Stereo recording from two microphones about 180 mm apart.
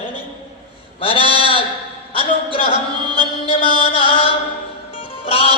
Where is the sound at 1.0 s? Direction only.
30° left (ahead or behind).